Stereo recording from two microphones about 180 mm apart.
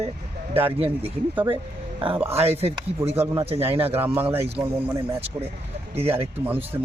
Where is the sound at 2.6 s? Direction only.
35° right (ahead or behind).